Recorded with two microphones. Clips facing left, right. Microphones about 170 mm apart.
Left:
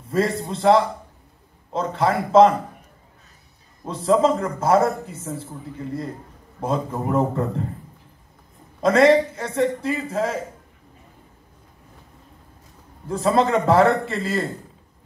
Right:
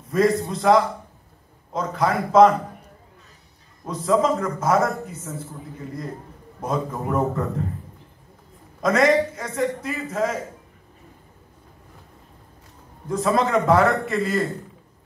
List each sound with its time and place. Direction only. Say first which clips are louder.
0.1 s a man's voice: right 3 dB; 30° left (ahead or behind)
3.8 s a man's voice: left 2 dB; 30° left (ahead or behind)
6.6 s a man's voice: left 2 dB; 30° left (ahead or behind)
8.8 s a man's voice: left 3 dB; 30° left (ahead or behind)
13.1 s a man's voice: left 1 dB; 30° left (ahead or behind)